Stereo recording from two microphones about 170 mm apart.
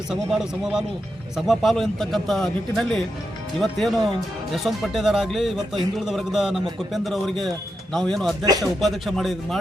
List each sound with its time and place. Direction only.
0.1 s speech: 5° right (ahead or behind)
8.4 s speech: 20° right (ahead or behind)
8.8 s speech: centre (ahead or behind)